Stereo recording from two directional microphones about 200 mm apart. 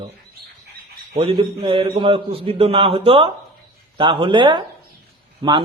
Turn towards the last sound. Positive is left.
turn(degrees=-25)  # may be behind; listen again after turning